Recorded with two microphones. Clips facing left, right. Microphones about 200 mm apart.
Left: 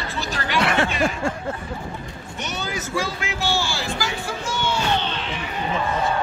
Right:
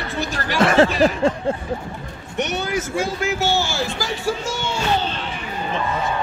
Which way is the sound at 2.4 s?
65° right (ahead or behind).